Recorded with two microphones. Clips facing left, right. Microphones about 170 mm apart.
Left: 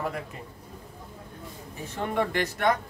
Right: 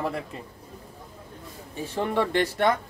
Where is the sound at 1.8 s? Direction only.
30° right (ahead or behind).